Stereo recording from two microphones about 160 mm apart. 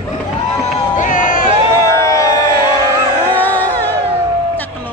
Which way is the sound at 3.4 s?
10° left (ahead or behind).